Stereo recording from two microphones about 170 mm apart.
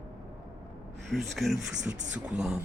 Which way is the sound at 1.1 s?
Centre (ahead or behind).